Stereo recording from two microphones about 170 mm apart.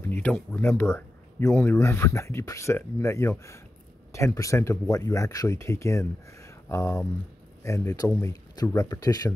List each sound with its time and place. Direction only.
0.0 s speech: 10° left (ahead or behind)